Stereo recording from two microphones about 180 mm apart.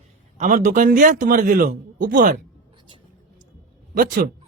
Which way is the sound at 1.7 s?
70° right (ahead or behind).